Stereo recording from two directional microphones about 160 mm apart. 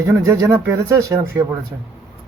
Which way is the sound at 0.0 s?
20° right (ahead or behind).